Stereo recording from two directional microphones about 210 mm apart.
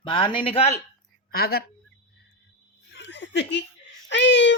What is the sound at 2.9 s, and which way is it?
Laughter, 55° left (ahead or behind).